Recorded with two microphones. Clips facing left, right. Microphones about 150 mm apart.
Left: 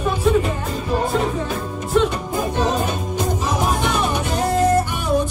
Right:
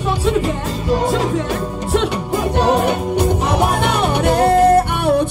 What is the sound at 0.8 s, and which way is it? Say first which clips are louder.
Music: right 3 dB; 80° right.